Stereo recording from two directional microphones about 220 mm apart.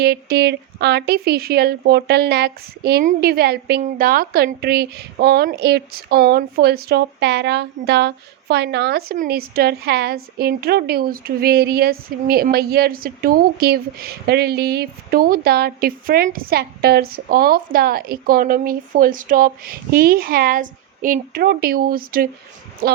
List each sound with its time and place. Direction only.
0.0 s speech: 50° right (ahead or behind)